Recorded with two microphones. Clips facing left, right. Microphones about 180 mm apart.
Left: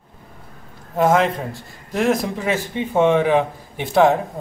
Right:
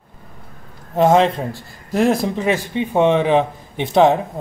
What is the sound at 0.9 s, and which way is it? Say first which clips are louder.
Speech: right 3 dB; 25° right (ahead or behind).